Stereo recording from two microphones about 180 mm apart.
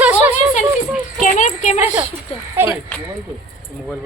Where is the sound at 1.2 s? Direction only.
45° left (ahead or behind).